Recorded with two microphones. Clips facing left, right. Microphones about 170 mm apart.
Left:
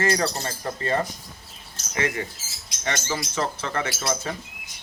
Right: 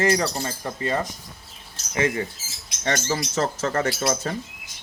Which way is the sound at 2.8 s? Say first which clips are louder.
Right 3 dB; 40° right (ahead or behind).